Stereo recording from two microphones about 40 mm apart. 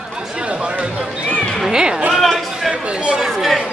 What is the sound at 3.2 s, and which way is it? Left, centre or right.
Chatter, centre.